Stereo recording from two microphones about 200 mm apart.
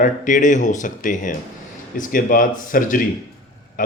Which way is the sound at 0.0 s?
40° left (ahead or behind).